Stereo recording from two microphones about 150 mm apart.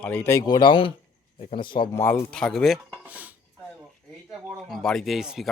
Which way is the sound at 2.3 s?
5° left (ahead or behind).